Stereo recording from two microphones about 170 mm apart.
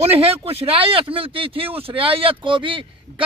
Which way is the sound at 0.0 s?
35° right (ahead or behind).